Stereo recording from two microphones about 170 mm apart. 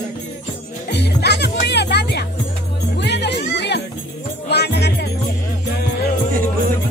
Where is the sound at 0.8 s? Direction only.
75° left (ahead or behind).